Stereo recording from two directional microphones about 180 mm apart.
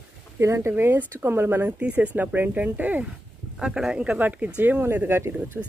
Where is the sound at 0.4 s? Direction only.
15° right (ahead or behind).